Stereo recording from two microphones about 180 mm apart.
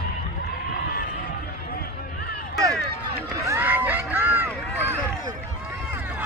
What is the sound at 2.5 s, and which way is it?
Run, 20° right (ahead or behind).